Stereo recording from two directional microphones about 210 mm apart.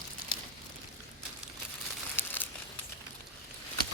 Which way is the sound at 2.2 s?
10° left (ahead or behind).